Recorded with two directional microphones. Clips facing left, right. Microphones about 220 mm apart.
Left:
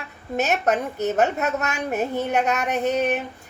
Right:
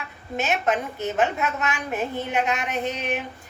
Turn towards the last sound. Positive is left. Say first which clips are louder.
# left 6 dB
turn(degrees=45)  # may be behind; listen again after turning